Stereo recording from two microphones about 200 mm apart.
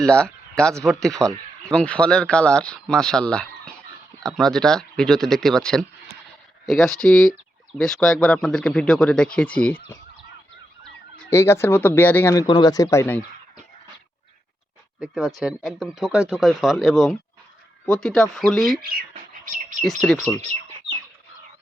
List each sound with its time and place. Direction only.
0.0 s speech: 5° left (ahead or behind)
11.3 s speech: 15° left (ahead or behind)
15.0 s speech: centre (ahead or behind)
18.8 s bird: 45° right (ahead or behind)
19.8 s speech: centre (ahead or behind)